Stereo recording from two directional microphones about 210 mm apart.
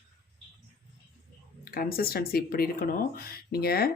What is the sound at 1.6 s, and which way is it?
Speech, 45° left (ahead or behind).